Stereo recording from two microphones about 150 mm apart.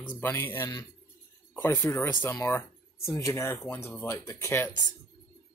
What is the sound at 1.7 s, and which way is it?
Speech, 20° left (ahead or behind).